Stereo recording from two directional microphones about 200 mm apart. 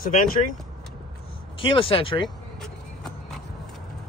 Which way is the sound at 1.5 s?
25° left (ahead or behind).